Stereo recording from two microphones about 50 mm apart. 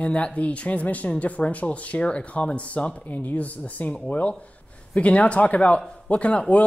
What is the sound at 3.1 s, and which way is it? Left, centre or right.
Speech, left.